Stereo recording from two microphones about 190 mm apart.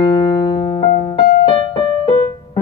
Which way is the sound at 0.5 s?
25° left (ahead or behind).